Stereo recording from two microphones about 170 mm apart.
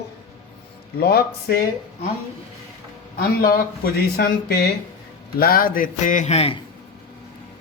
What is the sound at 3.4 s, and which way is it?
A man's voice, 60° left (ahead or behind).